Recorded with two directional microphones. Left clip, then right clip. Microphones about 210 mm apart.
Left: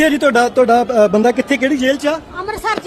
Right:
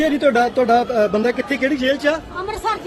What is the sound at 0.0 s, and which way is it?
A man's voice, 40° left (ahead or behind).